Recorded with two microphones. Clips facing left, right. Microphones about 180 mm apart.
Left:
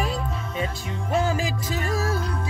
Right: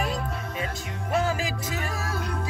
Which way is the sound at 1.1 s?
30° left (ahead or behind).